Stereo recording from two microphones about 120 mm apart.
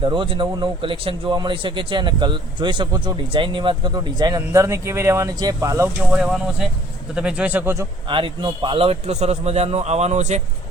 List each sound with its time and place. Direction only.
0.0 s speech: 45° right (ahead or behind); by 5.9 s 25° right (ahead or behind)
6.1 s speech: 5° right (ahead or behind)
8.0 s a man's voice: 45° right (ahead or behind); by 10.4 s 80° right